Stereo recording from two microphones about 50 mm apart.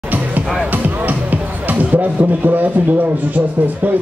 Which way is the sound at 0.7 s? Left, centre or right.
Right.